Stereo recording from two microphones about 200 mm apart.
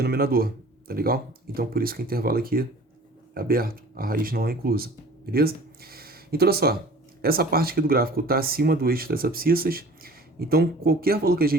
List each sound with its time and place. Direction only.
0.0 s speech: 50° right (ahead or behind)